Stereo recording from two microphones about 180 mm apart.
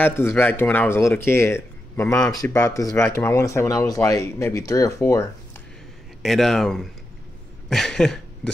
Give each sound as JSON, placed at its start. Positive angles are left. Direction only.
{"t": 0.0, "sound": "speech", "side_deg": 10}
{"t": 6.2, "sound": "speech", "side_deg": 0}